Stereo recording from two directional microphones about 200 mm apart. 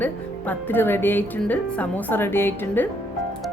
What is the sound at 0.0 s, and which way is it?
Speech, 10° left (ahead or behind).